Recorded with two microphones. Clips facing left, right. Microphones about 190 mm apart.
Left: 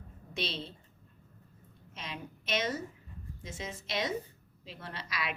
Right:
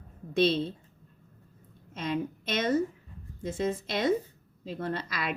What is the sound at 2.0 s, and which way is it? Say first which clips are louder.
A woman's voice: right 12 dB; 55° right (ahead or behind).